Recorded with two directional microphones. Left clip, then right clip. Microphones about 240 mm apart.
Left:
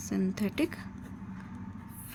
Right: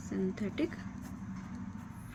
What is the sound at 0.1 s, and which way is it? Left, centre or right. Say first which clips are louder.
Speech: left 3 dB; left.